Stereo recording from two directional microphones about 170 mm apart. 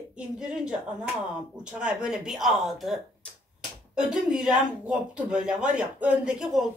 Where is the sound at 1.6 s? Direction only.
5° right (ahead or behind).